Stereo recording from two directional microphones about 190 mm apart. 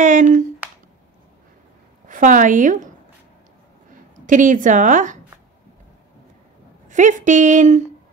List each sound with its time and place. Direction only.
0.0 s a woman's voice: 40° right (ahead or behind)
2.0 s a woman's voice: 45° right (ahead or behind)
4.3 s a woman's voice: 40° right (ahead or behind)
6.9 s a woman's voice: 40° right (ahead or behind)